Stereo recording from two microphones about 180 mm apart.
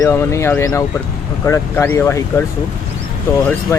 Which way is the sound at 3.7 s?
15° left (ahead or behind).